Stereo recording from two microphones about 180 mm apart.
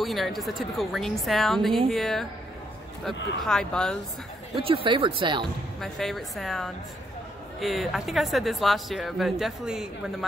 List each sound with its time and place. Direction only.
0.0 s speech: centre (ahead or behind)
3.4 s speech: 5° left (ahead or behind)
4.6 s speech: 30° right (ahead or behind)
5.8 s speech: centre (ahead or behind)